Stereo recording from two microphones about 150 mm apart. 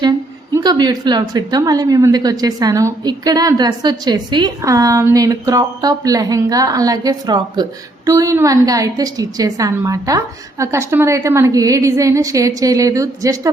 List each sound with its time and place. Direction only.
0.5 s a woman's voice: 30° right (ahead or behind)